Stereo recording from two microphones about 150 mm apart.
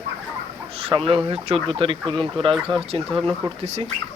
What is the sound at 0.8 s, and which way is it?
Speech, 35° right (ahead or behind).